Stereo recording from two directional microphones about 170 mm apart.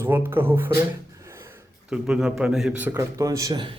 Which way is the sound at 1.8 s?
5° right (ahead or behind).